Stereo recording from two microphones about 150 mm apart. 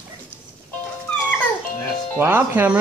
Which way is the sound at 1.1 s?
10° left (ahead or behind).